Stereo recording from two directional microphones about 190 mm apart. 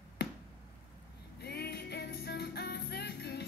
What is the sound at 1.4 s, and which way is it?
Music, 60° left (ahead or behind).